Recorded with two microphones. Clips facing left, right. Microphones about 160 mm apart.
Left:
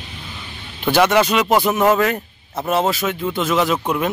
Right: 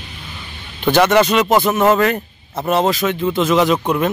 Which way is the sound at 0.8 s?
5° left (ahead or behind).